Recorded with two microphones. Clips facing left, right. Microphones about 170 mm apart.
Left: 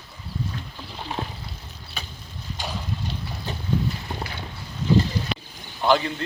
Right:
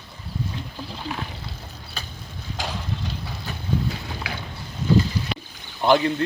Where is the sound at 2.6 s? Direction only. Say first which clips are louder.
Right 3 dB; 90° right.